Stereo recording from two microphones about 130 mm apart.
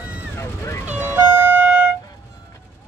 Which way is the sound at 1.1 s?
15° right (ahead or behind).